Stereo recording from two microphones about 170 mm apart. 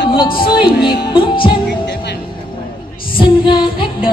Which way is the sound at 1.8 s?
80° left.